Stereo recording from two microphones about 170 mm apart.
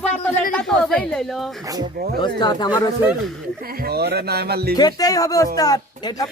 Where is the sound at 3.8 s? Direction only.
70° right (ahead or behind).